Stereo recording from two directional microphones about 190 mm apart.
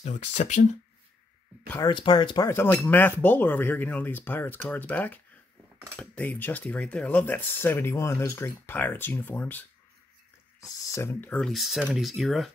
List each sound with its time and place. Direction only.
0.0 s speech: 35° left (ahead or behind)
1.9 s speech: 25° left (ahead or behind)
10.7 s speech: 15° left (ahead or behind); by 12.4 s centre (ahead or behind)